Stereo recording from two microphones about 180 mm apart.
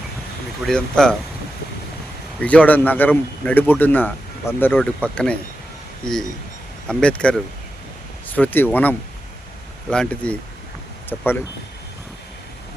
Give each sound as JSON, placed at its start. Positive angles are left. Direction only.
{"t": 0.6, "sound": "speech", "side_deg": 5}
{"t": 2.4, "sound": "a man's voice", "side_deg": 5}